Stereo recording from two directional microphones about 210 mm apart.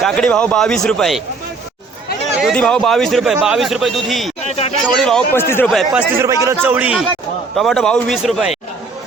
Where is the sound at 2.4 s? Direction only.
5° left (ahead or behind).